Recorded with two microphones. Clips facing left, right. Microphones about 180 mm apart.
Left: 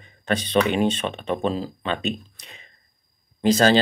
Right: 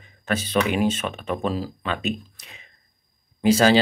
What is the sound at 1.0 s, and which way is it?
Speech, 30° left (ahead or behind).